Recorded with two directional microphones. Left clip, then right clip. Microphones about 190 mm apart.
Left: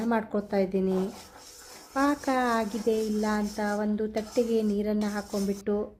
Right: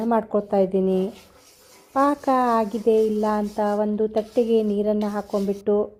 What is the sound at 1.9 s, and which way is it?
A woman's voice, 20° right (ahead or behind).